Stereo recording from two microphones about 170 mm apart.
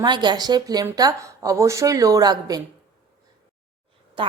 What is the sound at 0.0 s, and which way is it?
A woman's voice, 25° right (ahead or behind).